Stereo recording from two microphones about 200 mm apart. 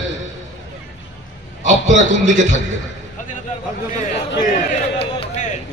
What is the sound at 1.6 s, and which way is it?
Speech, 35° right (ahead or behind).